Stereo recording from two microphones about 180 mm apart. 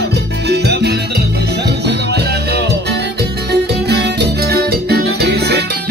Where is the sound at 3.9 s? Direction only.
65° right (ahead or behind).